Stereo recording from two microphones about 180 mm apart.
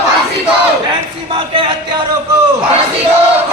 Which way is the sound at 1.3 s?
30° right (ahead or behind).